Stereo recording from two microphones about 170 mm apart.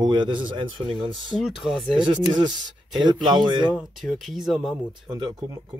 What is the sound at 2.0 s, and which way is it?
A man's voice, 25° right (ahead or behind).